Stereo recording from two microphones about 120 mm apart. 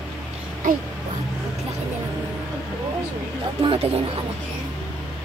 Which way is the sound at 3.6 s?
50° right (ahead or behind).